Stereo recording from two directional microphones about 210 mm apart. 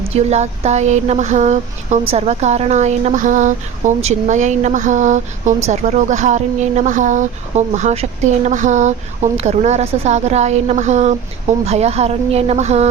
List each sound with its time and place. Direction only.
0.2 s speech: 30° right (ahead or behind)